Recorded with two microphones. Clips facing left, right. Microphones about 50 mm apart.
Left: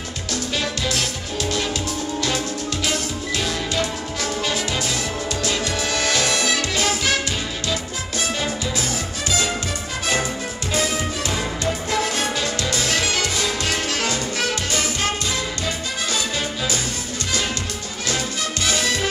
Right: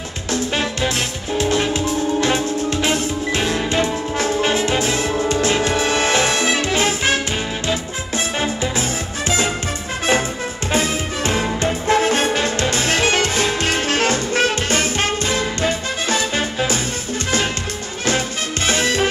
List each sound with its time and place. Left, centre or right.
0.3 s music: right
10.7 s music: right
18.7 s music: right